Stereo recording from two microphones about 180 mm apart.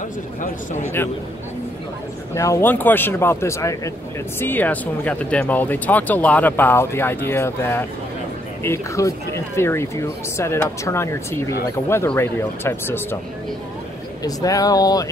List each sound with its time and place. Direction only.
1.0 s speech: 15° left (ahead or behind)
2.3 s speech: 15° left (ahead or behind)
14.2 s speech: 20° left (ahead or behind)